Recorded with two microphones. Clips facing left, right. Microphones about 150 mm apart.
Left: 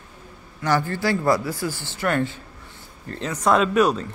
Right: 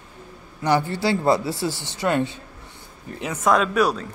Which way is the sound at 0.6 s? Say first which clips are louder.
Right 1 dB; 20° right (ahead or behind).